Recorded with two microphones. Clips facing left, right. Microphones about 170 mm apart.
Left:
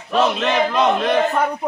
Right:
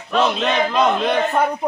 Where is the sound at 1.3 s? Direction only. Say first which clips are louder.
Right 1 dB; 10° right (ahead or behind).